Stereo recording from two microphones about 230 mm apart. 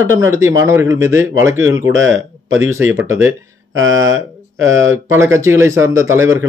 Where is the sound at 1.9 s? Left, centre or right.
Right.